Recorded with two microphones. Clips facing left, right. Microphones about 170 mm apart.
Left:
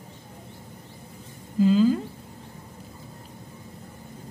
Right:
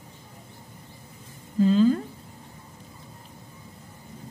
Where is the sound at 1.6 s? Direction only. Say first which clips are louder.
Even; 5° left (ahead or behind).